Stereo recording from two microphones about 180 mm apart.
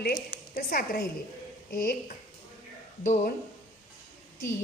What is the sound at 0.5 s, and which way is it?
A woman's voice, 55° left (ahead or behind).